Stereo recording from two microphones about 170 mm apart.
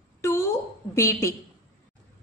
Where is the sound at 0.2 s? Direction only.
15° left (ahead or behind).